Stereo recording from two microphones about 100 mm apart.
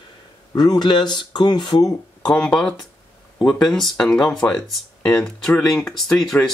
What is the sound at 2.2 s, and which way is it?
Speech, 5° left (ahead or behind).